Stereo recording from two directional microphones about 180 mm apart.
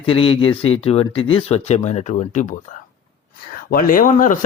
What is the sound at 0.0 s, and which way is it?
Speech, 30° left (ahead or behind).